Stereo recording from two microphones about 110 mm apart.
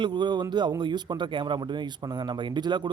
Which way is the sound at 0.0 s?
45° right (ahead or behind).